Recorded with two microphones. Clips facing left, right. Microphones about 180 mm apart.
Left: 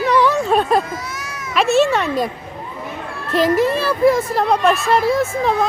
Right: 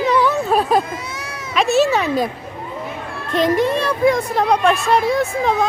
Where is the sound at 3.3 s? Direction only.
Centre (ahead or behind).